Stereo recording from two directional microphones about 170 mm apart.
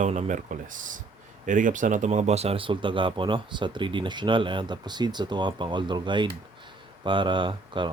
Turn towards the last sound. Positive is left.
turn(degrees=-30)  # may be behind; listen again after turning